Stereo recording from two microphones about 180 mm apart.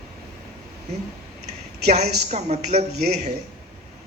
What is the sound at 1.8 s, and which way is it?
A man's voice, 40° right (ahead or behind).